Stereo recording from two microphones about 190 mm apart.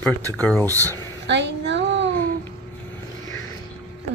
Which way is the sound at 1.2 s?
65° right (ahead or behind).